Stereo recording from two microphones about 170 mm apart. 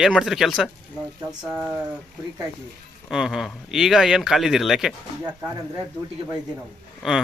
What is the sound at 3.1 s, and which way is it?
Speech, 5° right (ahead or behind).